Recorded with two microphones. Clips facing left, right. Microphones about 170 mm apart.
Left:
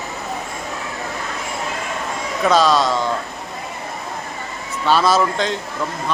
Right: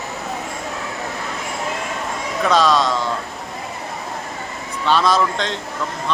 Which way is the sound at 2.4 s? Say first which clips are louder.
Left 1 dB; centre (ahead or behind).